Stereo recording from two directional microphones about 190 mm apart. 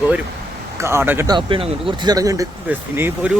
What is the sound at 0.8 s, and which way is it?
Speech, 15° right (ahead or behind).